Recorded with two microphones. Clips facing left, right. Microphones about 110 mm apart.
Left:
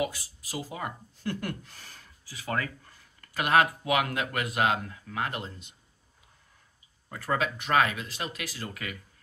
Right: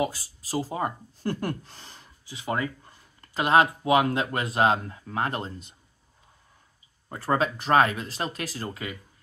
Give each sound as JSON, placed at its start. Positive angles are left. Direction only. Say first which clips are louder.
{"t": 0.0, "sound": "speech", "louder": "right 3 dB", "side_deg": -30}
{"t": 7.1, "sound": "speech", "louder": "right 4 dB", "side_deg": -30}